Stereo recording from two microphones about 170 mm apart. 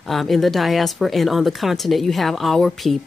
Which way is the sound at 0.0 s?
Centre (ahead or behind).